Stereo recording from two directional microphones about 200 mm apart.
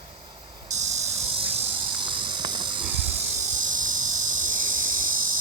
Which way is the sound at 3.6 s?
40° right (ahead or behind).